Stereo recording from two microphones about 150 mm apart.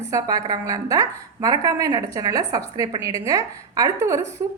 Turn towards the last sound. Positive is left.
turn(degrees=-20)  # may be behind; listen again after turning